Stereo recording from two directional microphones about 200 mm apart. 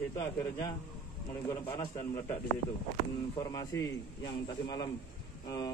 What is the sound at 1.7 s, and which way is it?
Speech, 15° left (ahead or behind).